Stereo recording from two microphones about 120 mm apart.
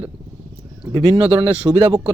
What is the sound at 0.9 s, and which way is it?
Speech, 40° right (ahead or behind).